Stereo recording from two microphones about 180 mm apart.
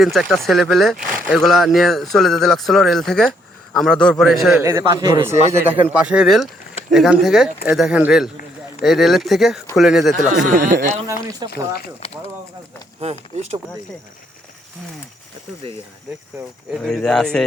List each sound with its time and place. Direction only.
0.0 s speech: centre (ahead or behind)
4.6 s speech: 20° right (ahead or behind)
5.5 s speech: 5° right (ahead or behind)
10.5 s speech: 50° right (ahead or behind)
11.4 s speech: 25° right (ahead or behind)
13.0 s speech: 35° right (ahead or behind)
16.7 s speech: centre (ahead or behind)